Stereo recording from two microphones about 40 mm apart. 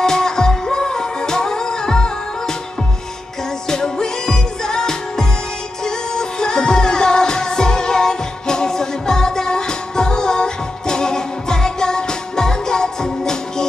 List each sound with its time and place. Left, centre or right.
0.0 s music: centre
3.6 s music: centre